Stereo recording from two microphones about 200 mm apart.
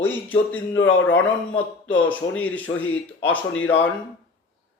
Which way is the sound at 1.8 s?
10° left (ahead or behind).